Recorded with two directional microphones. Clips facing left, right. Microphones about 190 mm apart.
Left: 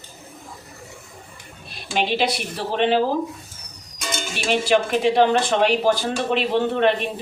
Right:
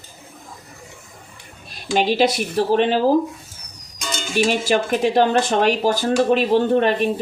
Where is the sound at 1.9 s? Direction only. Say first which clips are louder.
Right 4 dB; 45° right (ahead or behind).